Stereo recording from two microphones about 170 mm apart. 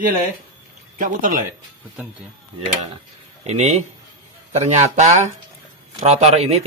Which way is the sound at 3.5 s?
40° right (ahead or behind).